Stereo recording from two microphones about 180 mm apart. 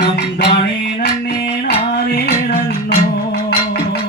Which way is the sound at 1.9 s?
60° left (ahead or behind).